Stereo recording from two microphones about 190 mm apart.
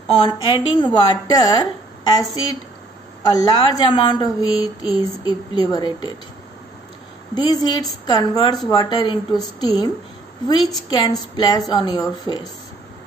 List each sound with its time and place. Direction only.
0.2 s a woman's voice: 25° left (ahead or behind)
3.3 s a woman's voice: 20° left (ahead or behind)
7.3 s a woman's voice: 20° left (ahead or behind)